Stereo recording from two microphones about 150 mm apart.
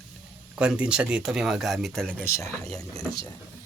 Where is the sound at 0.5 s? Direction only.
10° right (ahead or behind).